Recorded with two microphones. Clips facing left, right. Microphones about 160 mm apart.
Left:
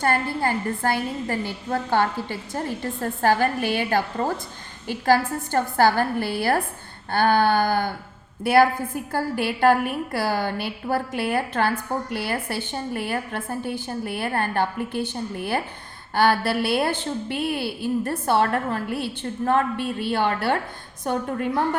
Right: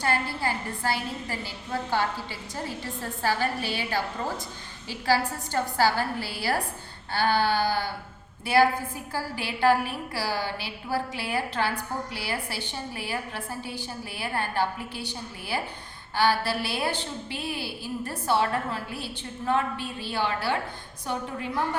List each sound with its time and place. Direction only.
0.0 s a woman's voice: 50° left (ahead or behind)
9.1 s a woman's voice: 55° left (ahead or behind)